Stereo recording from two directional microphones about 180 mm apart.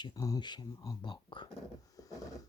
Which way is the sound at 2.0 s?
20° left (ahead or behind).